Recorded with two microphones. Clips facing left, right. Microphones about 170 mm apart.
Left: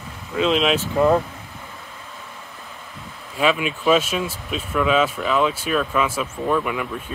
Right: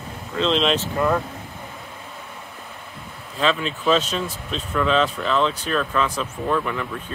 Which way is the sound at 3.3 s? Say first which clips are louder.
Left 2 dB; 10° left (ahead or behind).